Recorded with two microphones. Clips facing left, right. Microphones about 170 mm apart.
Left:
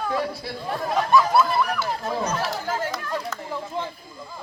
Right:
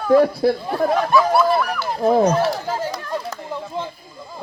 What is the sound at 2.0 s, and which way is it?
Speech, 60° right (ahead or behind).